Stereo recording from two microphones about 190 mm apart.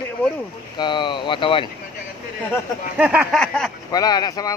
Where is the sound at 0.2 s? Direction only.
5° left (ahead or behind).